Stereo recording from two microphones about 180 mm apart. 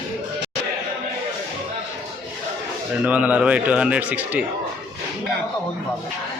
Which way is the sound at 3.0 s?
10° right (ahead or behind).